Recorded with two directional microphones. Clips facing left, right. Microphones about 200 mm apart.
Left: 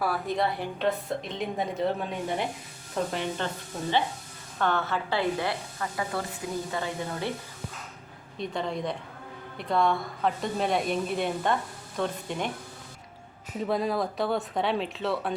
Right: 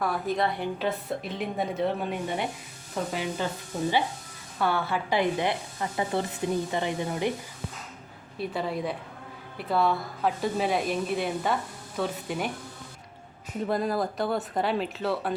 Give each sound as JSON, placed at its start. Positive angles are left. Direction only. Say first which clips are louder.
{"t": 0.0, "sound": "a woman's voice", "louder": "even", "side_deg": 0}
{"t": 4.6, "sound": "speech", "louder": "even", "side_deg": -10}
{"t": 8.4, "sound": "a woman's voice", "louder": "right 1 dB", "side_deg": -5}
{"t": 13.7, "sound": "a woman's voice", "louder": "even", "side_deg": 0}